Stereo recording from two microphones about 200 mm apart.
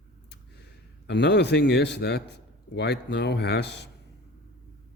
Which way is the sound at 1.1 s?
60° left (ahead or behind).